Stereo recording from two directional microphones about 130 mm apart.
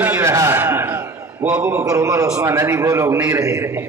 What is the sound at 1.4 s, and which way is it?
Speech, 10° right (ahead or behind).